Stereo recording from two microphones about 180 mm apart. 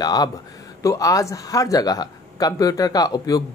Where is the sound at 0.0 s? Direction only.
20° left (ahead or behind).